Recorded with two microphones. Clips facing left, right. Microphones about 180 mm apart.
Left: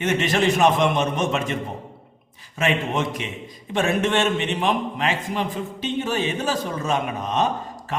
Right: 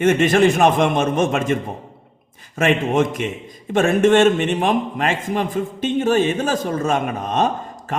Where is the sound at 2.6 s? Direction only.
50° right (ahead or behind).